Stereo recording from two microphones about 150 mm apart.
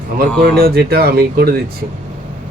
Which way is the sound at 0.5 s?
90° right.